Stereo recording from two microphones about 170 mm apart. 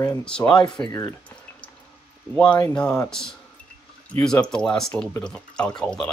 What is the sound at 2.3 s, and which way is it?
Speech, 5° left (ahead or behind).